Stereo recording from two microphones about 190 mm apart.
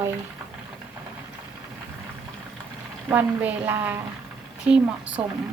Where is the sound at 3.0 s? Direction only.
10° right (ahead or behind).